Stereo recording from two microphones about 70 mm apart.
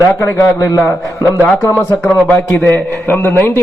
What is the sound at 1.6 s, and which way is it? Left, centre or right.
A man's voice, left.